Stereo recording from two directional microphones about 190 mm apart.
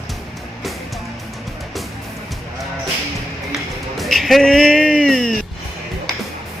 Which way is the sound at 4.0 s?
Centre (ahead or behind).